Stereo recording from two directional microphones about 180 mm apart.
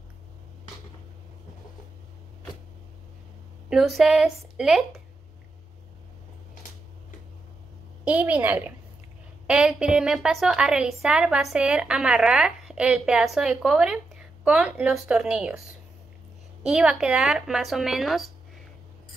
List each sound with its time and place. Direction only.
3.7 s a woman's voice: centre (ahead or behind)
8.0 s a woman's voice: 10° right (ahead or behind)
16.6 s a woman's voice: 5° right (ahead or behind)